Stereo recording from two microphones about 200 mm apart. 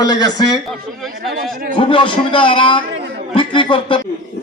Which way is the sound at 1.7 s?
25° left (ahead or behind).